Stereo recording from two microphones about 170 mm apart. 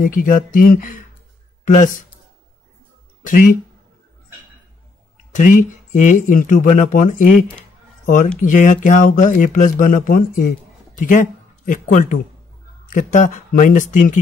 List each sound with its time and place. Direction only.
0.0 s a man's voice: 55° left (ahead or behind)
3.3 s speech: 50° left (ahead or behind)
5.3 s speech: 50° left (ahead or behind)
8.4 s speech: 50° left (ahead or behind)